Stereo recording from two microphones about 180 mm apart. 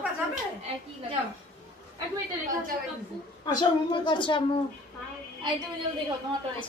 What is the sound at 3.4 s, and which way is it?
A woman's voice, 25° left (ahead or behind).